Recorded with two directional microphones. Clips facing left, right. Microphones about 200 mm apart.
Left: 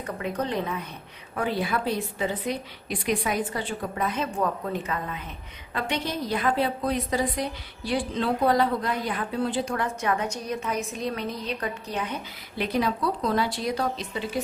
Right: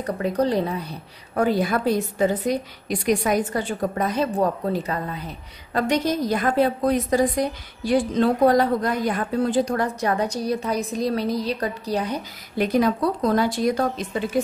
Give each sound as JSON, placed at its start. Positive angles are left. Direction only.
{"t": 0.0, "sound": "a woman's voice", "side_deg": -35}